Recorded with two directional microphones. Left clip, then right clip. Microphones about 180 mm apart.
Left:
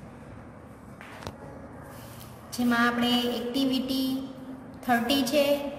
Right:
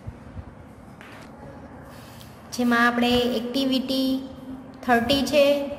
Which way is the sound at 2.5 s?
50° right (ahead or behind).